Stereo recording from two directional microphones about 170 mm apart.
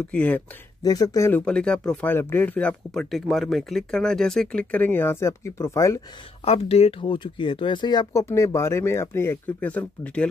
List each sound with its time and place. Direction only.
0.1 s speech: 10° left (ahead or behind)
0.8 s speech: 20° left (ahead or behind)
1.4 s speech: 5° left (ahead or behind)
6.4 s speech: 35° left (ahead or behind); by 10.2 s 10° left (ahead or behind)